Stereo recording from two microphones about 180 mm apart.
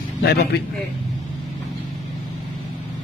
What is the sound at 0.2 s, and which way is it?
Speech, 65° left (ahead or behind).